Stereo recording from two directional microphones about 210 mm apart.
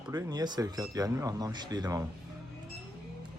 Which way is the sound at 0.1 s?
20° right (ahead or behind).